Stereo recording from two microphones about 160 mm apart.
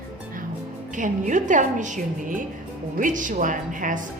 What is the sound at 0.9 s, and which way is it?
A woman's voice, 50° right (ahead or behind).